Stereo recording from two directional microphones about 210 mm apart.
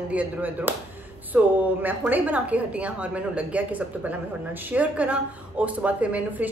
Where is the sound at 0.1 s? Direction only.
5° right (ahead or behind).